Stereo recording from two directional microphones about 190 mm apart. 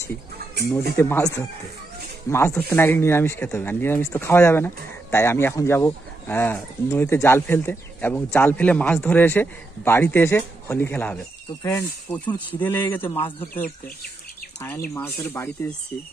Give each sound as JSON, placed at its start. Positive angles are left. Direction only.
{"t": 0.7, "sound": "speech", "side_deg": 10}
{"t": 12.5, "sound": "speech", "side_deg": 10}
{"t": 15.0, "sound": "speech", "side_deg": 10}